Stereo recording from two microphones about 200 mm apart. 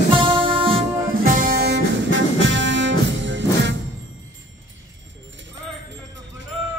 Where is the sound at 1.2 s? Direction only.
40° right (ahead or behind).